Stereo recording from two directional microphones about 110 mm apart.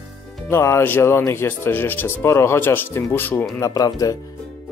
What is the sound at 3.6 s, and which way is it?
Speech, 35° left (ahead or behind).